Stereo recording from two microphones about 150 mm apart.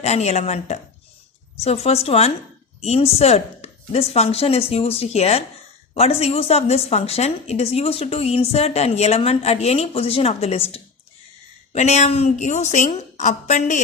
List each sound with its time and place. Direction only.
0.0 s a woman's voice: 45° left (ahead or behind)